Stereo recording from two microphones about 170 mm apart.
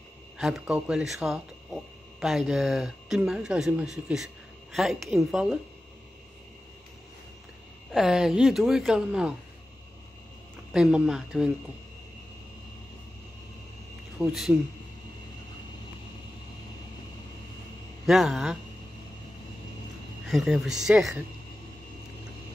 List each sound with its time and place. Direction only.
0.4 s speech: 5° right (ahead or behind)
7.9 s speech: centre (ahead or behind)
10.7 s speech: 5° right (ahead or behind)
14.1 s speech: centre (ahead or behind)
18.0 s speech: centre (ahead or behind)
20.2 s speech: centre (ahead or behind)